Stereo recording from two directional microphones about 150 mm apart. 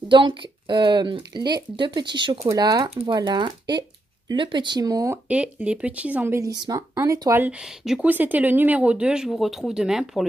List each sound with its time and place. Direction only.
0.1 s speech: 35° right (ahead or behind)
5.3 s speech: 10° right (ahead or behind)
7.5 s speech: 5° right (ahead or behind)